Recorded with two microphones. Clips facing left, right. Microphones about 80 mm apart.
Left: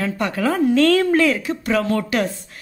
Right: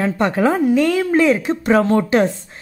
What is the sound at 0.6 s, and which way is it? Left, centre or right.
Speech, centre.